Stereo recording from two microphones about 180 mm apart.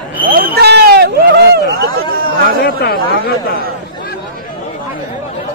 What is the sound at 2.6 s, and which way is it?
Speech, 55° left (ahead or behind).